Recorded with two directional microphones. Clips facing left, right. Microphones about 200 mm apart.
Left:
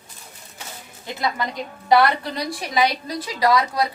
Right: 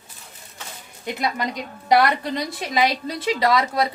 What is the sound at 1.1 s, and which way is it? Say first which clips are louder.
A woman's voice: right 1 dB; 20° right (ahead or behind).